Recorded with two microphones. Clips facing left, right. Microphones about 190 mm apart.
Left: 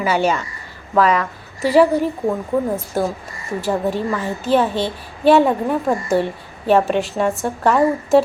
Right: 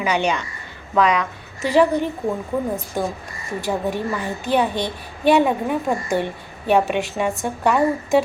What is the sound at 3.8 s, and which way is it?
A woman's voice, 15° right (ahead or behind).